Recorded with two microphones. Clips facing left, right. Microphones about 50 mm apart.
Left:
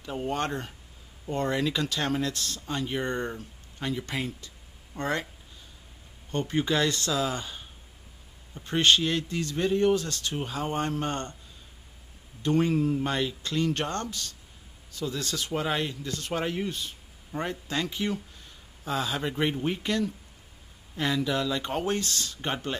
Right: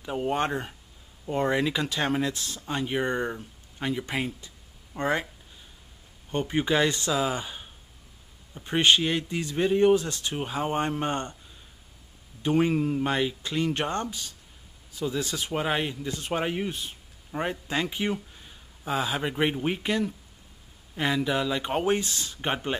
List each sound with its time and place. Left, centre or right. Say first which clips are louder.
0.0 s speech: right 3 dB; centre
6.3 s speech: right 2 dB; centre
12.4 s speech: right 1 dB; centre